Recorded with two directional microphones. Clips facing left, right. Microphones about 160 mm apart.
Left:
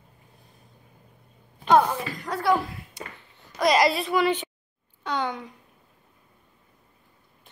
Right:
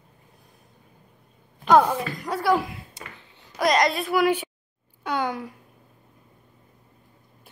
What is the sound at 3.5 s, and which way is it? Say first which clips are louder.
Speech: left 1 dB; centre (ahead or behind).